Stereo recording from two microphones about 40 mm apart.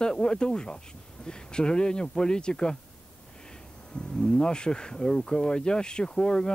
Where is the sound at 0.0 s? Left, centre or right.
Centre.